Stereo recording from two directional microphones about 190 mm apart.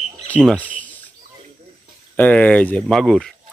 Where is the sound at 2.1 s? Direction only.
10° left (ahead or behind).